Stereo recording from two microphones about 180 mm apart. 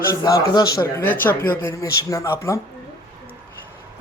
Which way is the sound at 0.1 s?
20° left (ahead or behind).